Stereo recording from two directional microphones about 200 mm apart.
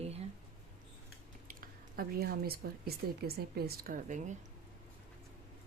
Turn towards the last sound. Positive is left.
turn(degrees=-40)  # may be behind; listen again after turning